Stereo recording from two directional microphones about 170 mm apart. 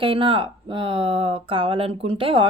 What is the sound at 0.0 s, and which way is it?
Speech, 30° right (ahead or behind).